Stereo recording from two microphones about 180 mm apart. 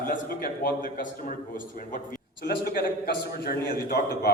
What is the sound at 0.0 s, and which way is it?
A man's voice, 50° left (ahead or behind).